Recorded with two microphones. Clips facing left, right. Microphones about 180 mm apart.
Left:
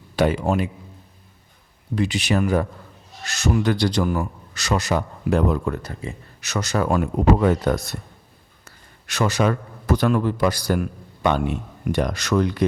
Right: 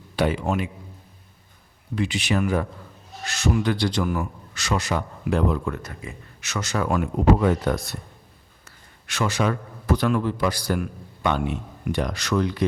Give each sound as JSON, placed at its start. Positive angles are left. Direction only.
{"t": 0.2, "sound": "a man's voice", "side_deg": 40}
{"t": 2.0, "sound": "a man's voice", "side_deg": 40}